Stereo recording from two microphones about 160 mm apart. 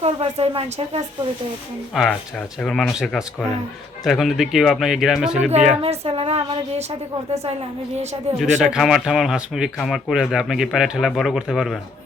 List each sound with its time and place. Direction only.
0.0 s speech: 40° right (ahead or behind)
1.9 s speech: 5° right (ahead or behind)
5.8 s a sound: 40° right (ahead or behind)
8.4 s speech: 5° right (ahead or behind)